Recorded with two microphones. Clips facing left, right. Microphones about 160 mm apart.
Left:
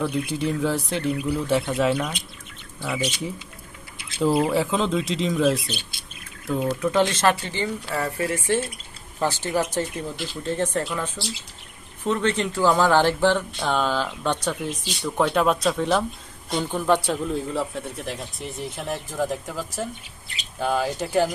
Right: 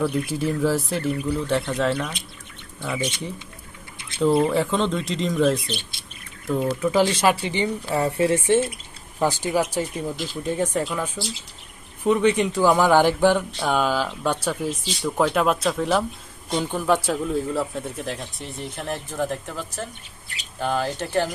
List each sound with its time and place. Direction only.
0.0 s speech: centre (ahead or behind); by 8.6 s 25° right (ahead or behind)
9.1 s speech: 10° right (ahead or behind); by 21.2 s 5° left (ahead or behind)